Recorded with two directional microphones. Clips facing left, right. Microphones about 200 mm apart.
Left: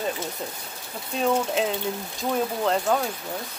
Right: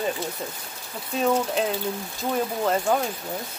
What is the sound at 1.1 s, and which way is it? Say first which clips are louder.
Speech: right 1 dB; centre (ahead or behind).